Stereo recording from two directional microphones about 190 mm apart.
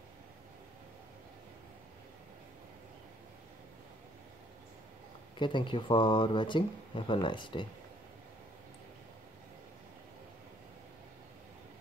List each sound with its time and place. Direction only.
5.4 s speech: 25° left (ahead or behind)